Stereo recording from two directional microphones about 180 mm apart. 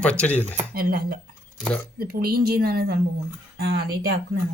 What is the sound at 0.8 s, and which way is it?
Speech, 55° right (ahead or behind).